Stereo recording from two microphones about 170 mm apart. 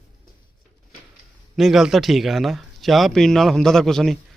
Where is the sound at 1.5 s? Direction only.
Centre (ahead or behind).